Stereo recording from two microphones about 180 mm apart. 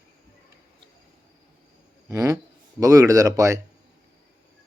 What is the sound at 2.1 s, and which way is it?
Speech, 15° right (ahead or behind).